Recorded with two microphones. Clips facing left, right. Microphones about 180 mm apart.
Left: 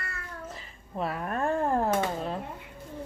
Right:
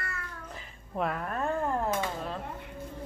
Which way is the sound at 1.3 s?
30° left (ahead or behind).